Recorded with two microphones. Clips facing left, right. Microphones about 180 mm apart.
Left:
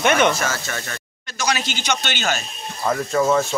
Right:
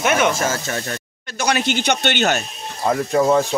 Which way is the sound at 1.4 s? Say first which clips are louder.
Right 5 dB; 55° right (ahead or behind).